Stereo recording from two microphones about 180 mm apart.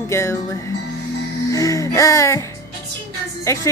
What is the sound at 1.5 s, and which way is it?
Speech, 15° left (ahead or behind).